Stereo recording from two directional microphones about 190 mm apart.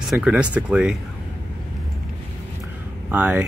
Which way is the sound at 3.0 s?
5° right (ahead or behind).